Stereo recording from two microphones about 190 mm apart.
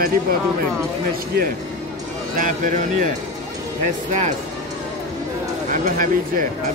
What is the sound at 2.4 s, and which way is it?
Speech, 45° right (ahead or behind).